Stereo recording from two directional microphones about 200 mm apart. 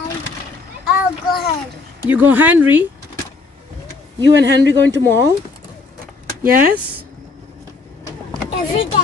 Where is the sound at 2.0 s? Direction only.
10° right (ahead or behind).